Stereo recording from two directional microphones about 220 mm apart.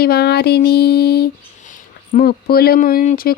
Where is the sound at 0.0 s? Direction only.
45° left (ahead or behind).